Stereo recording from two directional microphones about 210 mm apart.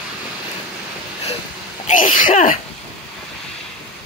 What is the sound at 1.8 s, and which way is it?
Speech, 40° left (ahead or behind).